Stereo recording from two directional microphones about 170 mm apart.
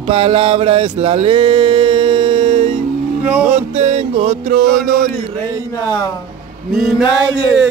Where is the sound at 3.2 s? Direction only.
10° right (ahead or behind).